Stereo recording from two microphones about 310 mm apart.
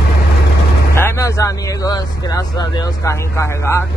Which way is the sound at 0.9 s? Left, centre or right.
Centre.